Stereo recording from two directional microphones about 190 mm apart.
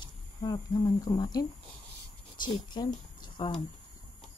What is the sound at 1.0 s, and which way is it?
Speech, 20° left (ahead or behind).